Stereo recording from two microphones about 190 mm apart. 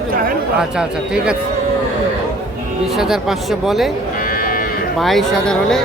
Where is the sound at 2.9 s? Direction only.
Centre (ahead or behind).